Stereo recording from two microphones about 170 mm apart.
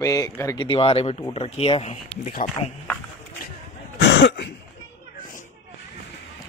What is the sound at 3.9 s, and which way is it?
Cough, 90° left.